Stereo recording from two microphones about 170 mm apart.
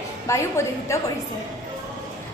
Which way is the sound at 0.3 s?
15° left (ahead or behind).